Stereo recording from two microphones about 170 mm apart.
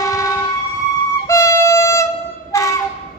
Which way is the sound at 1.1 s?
20° left (ahead or behind).